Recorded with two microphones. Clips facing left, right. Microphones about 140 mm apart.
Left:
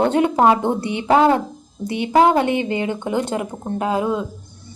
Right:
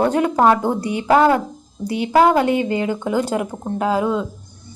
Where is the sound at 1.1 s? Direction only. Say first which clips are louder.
Even; 20° left (ahead or behind).